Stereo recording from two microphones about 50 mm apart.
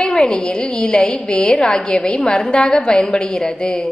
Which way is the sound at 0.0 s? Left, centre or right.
Centre.